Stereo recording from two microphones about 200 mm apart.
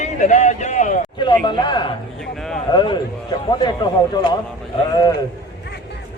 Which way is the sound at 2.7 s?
25° left (ahead or behind).